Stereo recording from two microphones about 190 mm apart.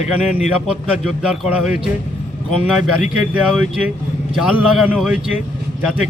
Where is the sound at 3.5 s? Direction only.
5° right (ahead or behind).